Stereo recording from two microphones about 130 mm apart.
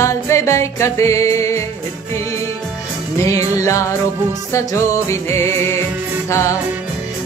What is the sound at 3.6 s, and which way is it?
Music, 25° left (ahead or behind).